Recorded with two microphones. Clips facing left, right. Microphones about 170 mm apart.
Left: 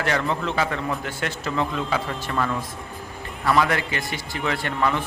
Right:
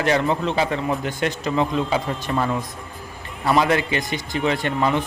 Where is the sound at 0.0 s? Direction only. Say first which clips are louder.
Right 4 dB; 20° right (ahead or behind).